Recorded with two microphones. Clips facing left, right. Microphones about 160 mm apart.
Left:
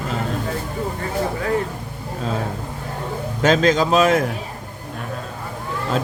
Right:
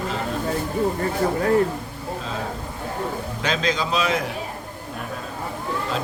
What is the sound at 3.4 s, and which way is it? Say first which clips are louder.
Speech: left 9 dB; 45° left (ahead or behind).